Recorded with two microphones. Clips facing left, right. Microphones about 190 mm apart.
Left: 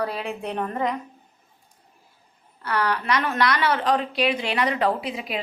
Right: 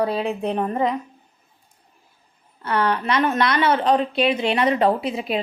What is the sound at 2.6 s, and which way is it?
A woman's voice, 25° right (ahead or behind).